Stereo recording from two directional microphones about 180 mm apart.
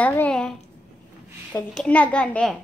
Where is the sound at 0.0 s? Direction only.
10° left (ahead or behind).